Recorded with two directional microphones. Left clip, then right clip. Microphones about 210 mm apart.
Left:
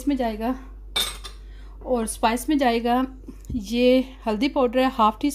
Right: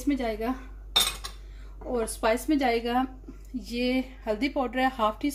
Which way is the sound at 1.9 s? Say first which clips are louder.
Left 4 dB; 50° left (ahead or behind).